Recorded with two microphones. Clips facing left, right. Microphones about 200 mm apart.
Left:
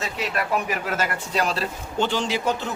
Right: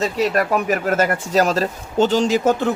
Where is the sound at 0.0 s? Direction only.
40° right (ahead or behind).